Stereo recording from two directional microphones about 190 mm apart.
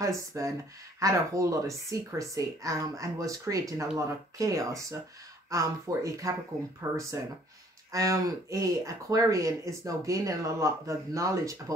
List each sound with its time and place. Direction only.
0.0 s speech: 15° right (ahead or behind)